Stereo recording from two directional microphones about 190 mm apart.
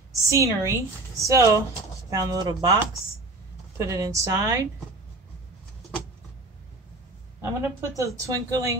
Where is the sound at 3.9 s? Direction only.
15° right (ahead or behind).